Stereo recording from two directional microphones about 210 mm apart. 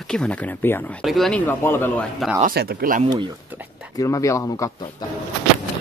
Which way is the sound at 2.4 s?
50° right (ahead or behind).